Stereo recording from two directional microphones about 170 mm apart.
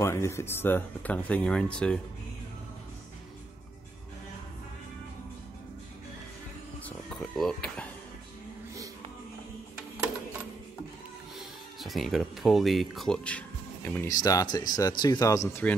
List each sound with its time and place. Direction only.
0.0 s speech: 15° left (ahead or behind)
6.8 s a sound: 5° left (ahead or behind)
11.3 s speech: centre (ahead or behind)
14.1 s speech: 20° left (ahead or behind)